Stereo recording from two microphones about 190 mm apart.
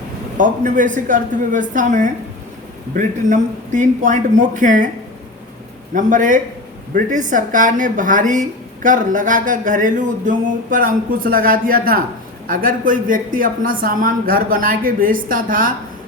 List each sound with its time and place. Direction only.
0.3 s a man's voice: 45° right (ahead or behind)
5.9 s speech: 45° right (ahead or behind)